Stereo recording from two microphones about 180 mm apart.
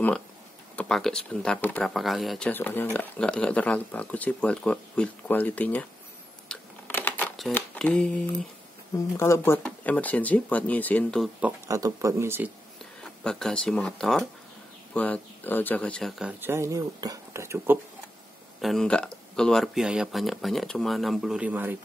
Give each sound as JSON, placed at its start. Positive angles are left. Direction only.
{"t": 0.7, "sound": "speech", "side_deg": 5}
{"t": 6.5, "sound": "a sound", "side_deg": 10}
{"t": 8.9, "sound": "speech", "side_deg": 15}
{"t": 11.4, "sound": "speech", "side_deg": -15}
{"t": 13.2, "sound": "speech", "side_deg": 5}
{"t": 18.6, "sound": "speech", "side_deg": 0}